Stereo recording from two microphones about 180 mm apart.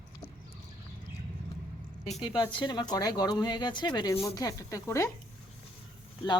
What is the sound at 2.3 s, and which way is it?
Speech, 25° left (ahead or behind).